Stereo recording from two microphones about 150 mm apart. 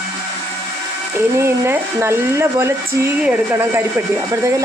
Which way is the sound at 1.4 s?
15° right (ahead or behind).